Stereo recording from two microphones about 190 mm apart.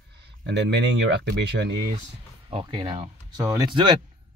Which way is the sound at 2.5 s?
30° right (ahead or behind).